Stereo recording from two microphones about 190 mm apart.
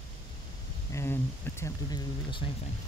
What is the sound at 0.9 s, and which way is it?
Speech, 15° left (ahead or behind).